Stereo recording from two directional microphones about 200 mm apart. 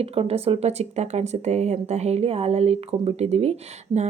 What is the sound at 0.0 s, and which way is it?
Speech, 30° right (ahead or behind).